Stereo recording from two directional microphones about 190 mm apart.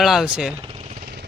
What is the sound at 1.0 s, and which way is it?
Vehicle, 55° right (ahead or behind).